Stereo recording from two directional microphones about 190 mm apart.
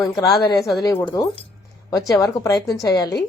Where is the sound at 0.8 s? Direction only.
20° left (ahead or behind).